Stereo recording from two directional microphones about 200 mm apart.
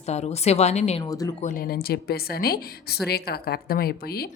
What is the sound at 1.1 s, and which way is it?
Speech, 20° left (ahead or behind).